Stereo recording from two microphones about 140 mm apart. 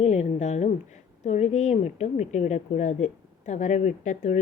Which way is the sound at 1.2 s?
55° left (ahead or behind).